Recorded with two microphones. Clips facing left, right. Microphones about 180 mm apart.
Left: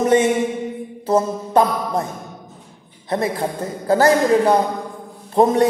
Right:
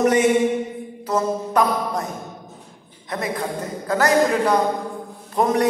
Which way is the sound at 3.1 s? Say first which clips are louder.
Left 4 dB; 30° left (ahead or behind).